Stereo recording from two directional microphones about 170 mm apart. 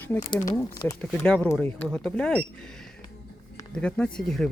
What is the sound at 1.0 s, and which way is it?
Speech, 5° left (ahead or behind).